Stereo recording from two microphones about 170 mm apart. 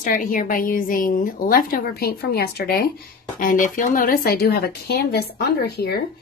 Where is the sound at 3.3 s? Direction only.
50° left (ahead or behind); by 6.0 s 70° left (ahead or behind).